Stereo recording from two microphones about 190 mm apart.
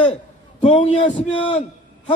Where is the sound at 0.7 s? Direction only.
35° left (ahead or behind).